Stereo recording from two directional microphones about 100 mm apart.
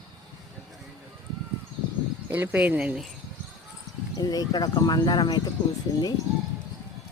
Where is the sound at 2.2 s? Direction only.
20° right (ahead or behind).